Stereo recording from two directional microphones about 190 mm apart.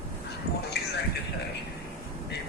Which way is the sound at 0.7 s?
60° left (ahead or behind).